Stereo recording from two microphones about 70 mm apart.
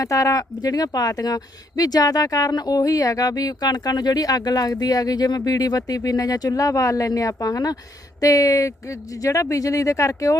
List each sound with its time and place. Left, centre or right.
0.0 s speech: left